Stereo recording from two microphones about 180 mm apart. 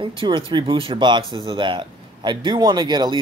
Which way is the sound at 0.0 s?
30° right (ahead or behind).